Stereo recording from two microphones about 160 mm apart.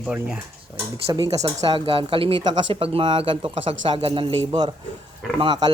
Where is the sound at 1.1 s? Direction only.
25° right (ahead or behind).